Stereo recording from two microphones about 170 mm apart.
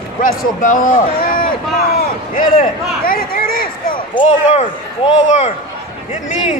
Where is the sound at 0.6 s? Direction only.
50° left (ahead or behind).